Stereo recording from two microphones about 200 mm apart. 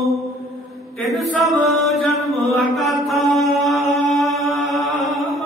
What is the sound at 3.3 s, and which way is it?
Mantra, centre (ahead or behind).